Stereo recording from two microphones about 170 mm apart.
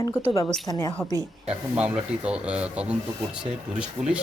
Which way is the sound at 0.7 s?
20° left (ahead or behind).